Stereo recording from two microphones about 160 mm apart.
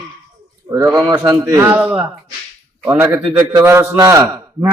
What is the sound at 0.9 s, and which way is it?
A man's voice, 10° right (ahead or behind).